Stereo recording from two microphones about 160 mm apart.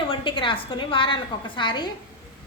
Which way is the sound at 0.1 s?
30° left (ahead or behind).